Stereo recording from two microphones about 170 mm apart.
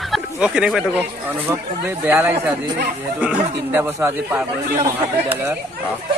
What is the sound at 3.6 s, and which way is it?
Speech, 10° right (ahead or behind).